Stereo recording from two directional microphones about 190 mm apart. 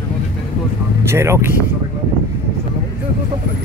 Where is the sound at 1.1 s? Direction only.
15° right (ahead or behind).